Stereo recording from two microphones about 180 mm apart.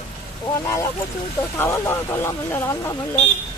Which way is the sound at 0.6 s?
15° left (ahead or behind).